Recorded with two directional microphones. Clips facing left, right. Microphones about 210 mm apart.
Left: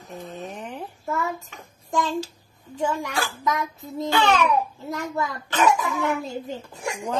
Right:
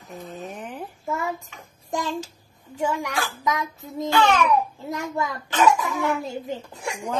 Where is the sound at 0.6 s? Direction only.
Centre (ahead or behind).